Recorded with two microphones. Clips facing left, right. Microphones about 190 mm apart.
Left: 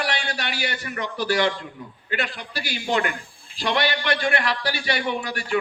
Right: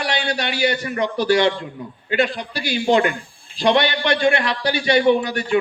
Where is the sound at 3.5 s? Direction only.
20° right (ahead or behind).